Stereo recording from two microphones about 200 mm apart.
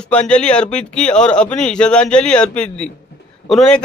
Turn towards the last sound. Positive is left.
turn(degrees=5)  # may be behind; listen again after turning